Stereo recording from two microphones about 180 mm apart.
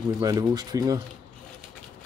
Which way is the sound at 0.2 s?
20° right (ahead or behind).